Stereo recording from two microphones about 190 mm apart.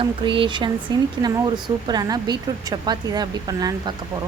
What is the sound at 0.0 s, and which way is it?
A woman's voice, 25° right (ahead or behind).